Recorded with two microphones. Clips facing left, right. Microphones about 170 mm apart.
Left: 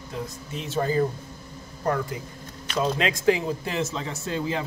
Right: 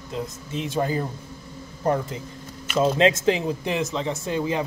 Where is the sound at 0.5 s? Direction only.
15° right (ahead or behind).